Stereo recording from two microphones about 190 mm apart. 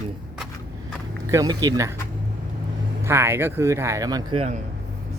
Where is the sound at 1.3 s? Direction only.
20° right (ahead or behind).